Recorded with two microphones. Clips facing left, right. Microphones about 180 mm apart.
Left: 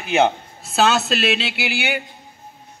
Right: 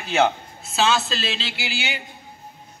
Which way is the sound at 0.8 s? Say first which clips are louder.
Left 4 dB; 65° left (ahead or behind).